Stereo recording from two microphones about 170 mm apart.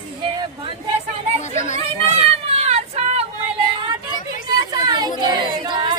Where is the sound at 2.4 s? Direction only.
40° right (ahead or behind).